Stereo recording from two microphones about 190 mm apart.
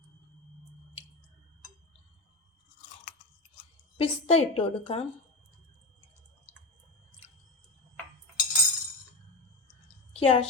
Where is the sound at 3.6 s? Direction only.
30° left (ahead or behind).